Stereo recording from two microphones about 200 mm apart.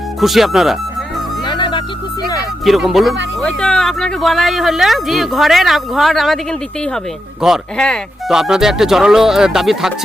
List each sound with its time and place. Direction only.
0.2 s speech: centre (ahead or behind)
1.5 s music: 25° left (ahead or behind)
2.6 s speech: centre (ahead or behind)